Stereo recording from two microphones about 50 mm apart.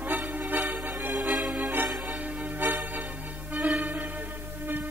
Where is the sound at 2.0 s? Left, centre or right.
Right.